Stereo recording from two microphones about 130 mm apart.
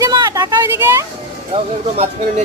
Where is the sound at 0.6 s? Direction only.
20° right (ahead or behind).